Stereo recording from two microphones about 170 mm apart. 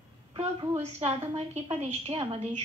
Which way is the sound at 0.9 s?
40° right (ahead or behind).